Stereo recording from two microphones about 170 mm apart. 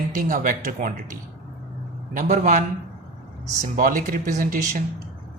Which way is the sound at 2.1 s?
45° right (ahead or behind).